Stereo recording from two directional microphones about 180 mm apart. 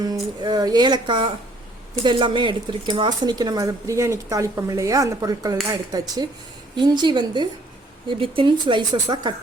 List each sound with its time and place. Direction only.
0.0 s speech: 20° right (ahead or behind)
6.7 s speech: 25° right (ahead or behind)